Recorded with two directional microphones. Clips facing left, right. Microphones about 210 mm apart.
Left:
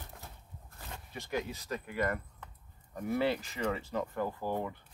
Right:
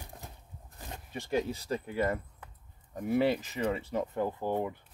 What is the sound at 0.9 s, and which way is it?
Speech, 30° right (ahead or behind).